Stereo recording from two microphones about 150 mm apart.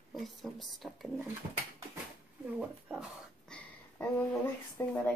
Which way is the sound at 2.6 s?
5° right (ahead or behind).